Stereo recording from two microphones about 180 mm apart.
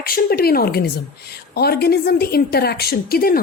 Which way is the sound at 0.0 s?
55° left (ahead or behind).